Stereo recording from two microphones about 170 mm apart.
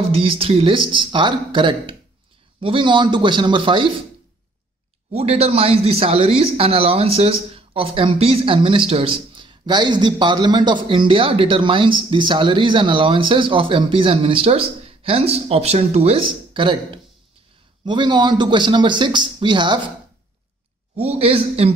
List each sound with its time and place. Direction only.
0.1 s speech: 35° right (ahead or behind)
5.1 s speech: 35° right (ahead or behind)
20.9 s speech: 40° right (ahead or behind)